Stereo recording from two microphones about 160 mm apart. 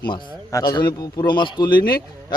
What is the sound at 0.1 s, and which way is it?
A man's voice, 25° left (ahead or behind).